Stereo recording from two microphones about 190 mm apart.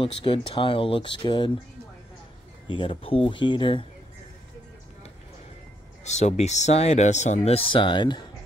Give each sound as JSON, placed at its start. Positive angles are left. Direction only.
{"t": 0.0, "sound": "speech", "side_deg": 30}
{"t": 2.7, "sound": "speech", "side_deg": 25}
{"t": 6.0, "sound": "speech", "side_deg": 35}